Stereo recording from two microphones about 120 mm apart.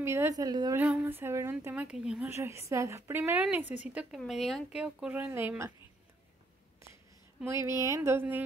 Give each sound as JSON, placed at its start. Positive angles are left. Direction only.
{"t": 0.0, "sound": "a woman's voice", "side_deg": -20}
{"t": 0.7, "sound": "a woman's voice", "side_deg": -15}
{"t": 2.2, "sound": "a woman's voice", "side_deg": -20}
{"t": 7.4, "sound": "a woman's voice", "side_deg": -25}